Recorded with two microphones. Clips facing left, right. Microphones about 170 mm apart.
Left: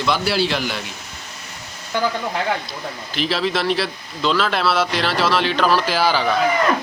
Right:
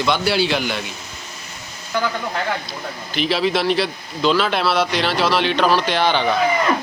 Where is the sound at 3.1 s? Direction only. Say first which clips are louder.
Right 2 dB; centre (ahead or behind).